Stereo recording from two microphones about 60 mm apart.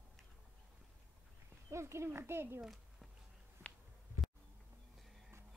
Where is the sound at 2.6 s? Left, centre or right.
Centre.